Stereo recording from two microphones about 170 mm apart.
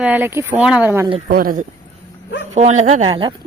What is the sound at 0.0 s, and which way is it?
Speech, 10° right (ahead or behind).